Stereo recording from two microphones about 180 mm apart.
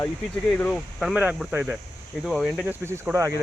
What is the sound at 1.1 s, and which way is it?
Speech, 10° right (ahead or behind).